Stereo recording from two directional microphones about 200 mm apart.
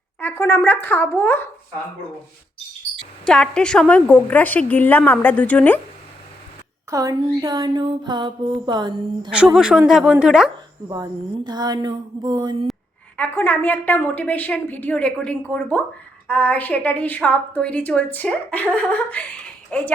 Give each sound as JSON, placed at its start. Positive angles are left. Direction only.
{"t": 0.2, "sound": "a woman's voice", "side_deg": 10}
{"t": 2.9, "sound": "a woman's voice", "side_deg": 5}
{"t": 6.9, "sound": "speech", "side_deg": -20}
{"t": 9.3, "sound": "a woman's voice", "side_deg": -5}
{"t": 10.8, "sound": "speech", "side_deg": -20}
{"t": 13.1, "sound": "a woman's voice", "side_deg": 10}